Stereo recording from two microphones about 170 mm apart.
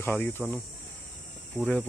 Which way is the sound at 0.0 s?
10° left (ahead or behind).